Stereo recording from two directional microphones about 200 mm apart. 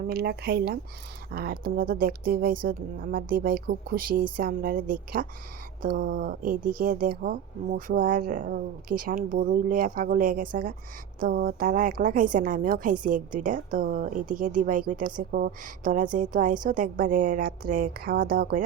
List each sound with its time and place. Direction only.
0.1 s a woman's voice: 50° right (ahead or behind)